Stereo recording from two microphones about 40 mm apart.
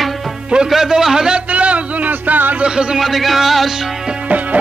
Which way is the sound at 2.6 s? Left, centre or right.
Right.